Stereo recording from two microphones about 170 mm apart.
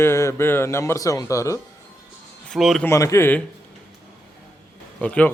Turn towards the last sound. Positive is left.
turn(degrees=10)  # may be behind; listen again after turning